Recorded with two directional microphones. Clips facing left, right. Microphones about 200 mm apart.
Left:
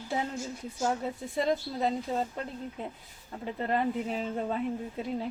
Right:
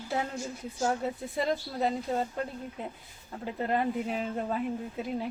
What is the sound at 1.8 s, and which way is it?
Speech, 5° right (ahead or behind).